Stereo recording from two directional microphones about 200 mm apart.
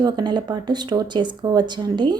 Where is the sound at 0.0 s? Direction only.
20° right (ahead or behind).